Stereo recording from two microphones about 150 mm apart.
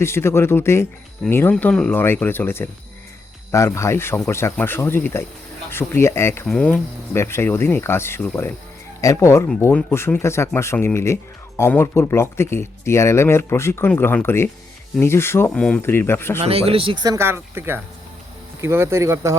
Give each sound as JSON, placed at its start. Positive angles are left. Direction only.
{"t": 0.0, "sound": "speech", "side_deg": 15}
{"t": 16.4, "sound": "speech", "side_deg": -40}